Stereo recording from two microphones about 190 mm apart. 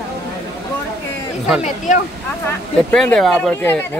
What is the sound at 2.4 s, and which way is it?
Speech, 10° left (ahead or behind).